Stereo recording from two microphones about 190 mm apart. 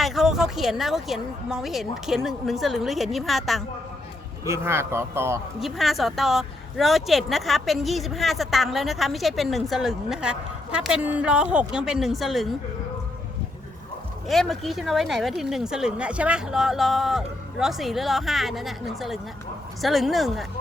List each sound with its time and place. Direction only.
0.0 s speech: centre (ahead or behind)
4.4 s speech: 15° right (ahead or behind)
5.5 s speech: centre (ahead or behind)
14.3 s speech: centre (ahead or behind)